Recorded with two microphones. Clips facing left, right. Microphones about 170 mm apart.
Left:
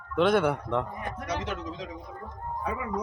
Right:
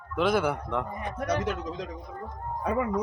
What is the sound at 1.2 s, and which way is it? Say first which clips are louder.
Speech: right 5 dB; 45° right (ahead or behind).